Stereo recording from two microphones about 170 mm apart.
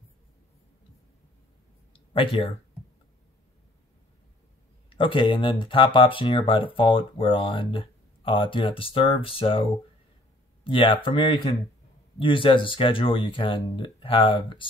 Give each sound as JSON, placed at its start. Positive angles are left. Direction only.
{"t": 2.1, "sound": "speech", "side_deg": 30}
{"t": 4.8, "sound": "speech", "side_deg": 30}